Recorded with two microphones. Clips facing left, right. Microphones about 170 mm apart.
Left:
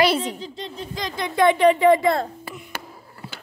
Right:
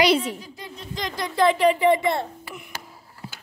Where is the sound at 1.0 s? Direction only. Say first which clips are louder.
Even; 50° right (ahead or behind).